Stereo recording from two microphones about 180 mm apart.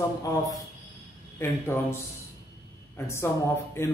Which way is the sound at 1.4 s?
15° left (ahead or behind).